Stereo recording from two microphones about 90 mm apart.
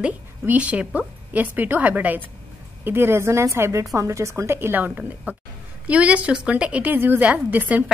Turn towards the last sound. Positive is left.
turn(degrees=-20)  # may be behind; listen again after turning